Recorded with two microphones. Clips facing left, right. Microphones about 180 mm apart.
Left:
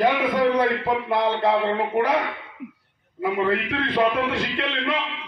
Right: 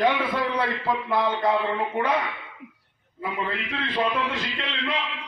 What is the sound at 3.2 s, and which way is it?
A man's voice, 55° left (ahead or behind).